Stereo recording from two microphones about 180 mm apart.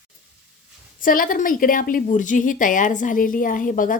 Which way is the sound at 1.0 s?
50° left (ahead or behind).